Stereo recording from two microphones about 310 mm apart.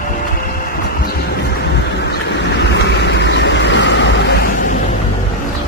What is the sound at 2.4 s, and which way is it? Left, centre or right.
Vehicle, left.